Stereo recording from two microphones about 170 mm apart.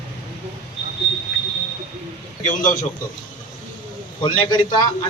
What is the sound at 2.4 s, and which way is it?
Speech, 50° left (ahead or behind).